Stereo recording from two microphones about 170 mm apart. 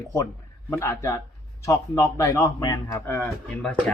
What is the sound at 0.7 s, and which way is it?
Speech, 15° left (ahead or behind).